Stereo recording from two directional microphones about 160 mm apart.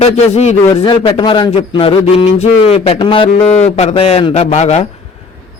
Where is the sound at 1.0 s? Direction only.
30° left (ahead or behind).